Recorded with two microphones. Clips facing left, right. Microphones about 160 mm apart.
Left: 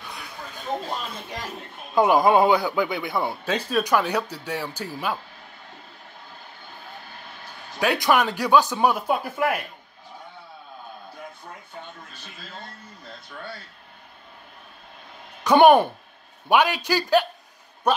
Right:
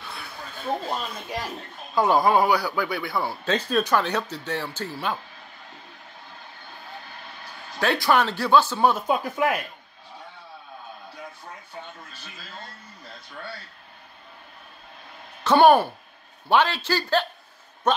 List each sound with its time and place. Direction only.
0.0 s a sound: 15° left (ahead or behind)
2.0 s speech: 20° left (ahead or behind)
3.4 s speech: 10° left (ahead or behind)
7.8 s speech: 10° left (ahead or behind)
15.4 s speech: 15° left (ahead or behind)